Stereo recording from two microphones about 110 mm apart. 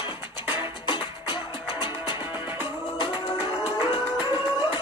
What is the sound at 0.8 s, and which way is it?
Music, 45° left (ahead or behind).